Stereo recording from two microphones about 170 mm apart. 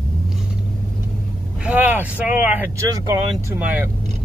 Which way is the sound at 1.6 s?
10° right (ahead or behind).